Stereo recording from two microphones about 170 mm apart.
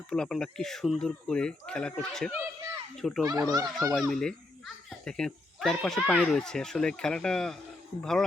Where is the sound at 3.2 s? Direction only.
25° right (ahead or behind).